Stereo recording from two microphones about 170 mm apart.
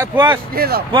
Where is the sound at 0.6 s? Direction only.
65° right (ahead or behind).